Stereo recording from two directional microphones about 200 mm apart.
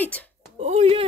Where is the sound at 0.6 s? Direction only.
30° right (ahead or behind).